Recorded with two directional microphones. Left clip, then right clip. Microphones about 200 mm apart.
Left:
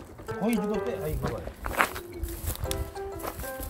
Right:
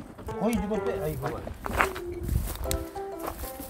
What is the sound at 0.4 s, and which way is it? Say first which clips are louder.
Speech: even; 15° right (ahead or behind).